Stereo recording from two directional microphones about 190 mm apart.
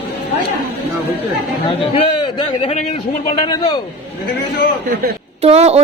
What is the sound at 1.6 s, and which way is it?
A man's voice, 30° left (ahead or behind).